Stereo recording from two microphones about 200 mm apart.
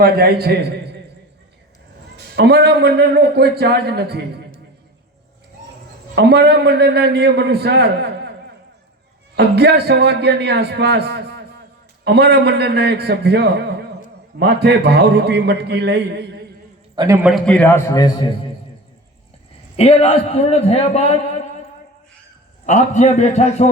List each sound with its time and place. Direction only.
0.0 s a man's voice: 50° right (ahead or behind)
2.3 s a man's voice: 55° right (ahead or behind)
6.1 s a man's voice: 55° right (ahead or behind)
9.3 s a man's voice: 55° right (ahead or behind)
16.9 s a man's voice: 20° right (ahead or behind)
17.2 s a man's voice: centre (ahead or behind)
19.7 s a man's voice: 30° left (ahead or behind)
22.6 s a man's voice: 35° left (ahead or behind)